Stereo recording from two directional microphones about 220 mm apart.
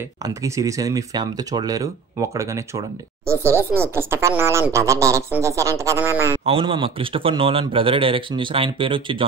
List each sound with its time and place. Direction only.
0.2 s speech: 15° right (ahead or behind)
6.4 s a man's voice: 25° right (ahead or behind)